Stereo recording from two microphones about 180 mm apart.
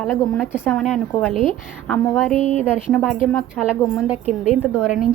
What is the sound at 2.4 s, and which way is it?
Speech, 35° right (ahead or behind).